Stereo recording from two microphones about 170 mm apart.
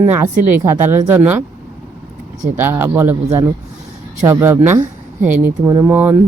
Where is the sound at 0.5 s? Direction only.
15° right (ahead or behind).